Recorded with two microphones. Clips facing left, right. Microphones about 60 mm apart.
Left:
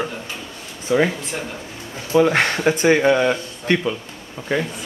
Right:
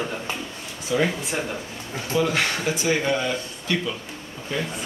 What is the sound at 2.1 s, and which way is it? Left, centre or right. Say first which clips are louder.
Speech: left 7 dB; left.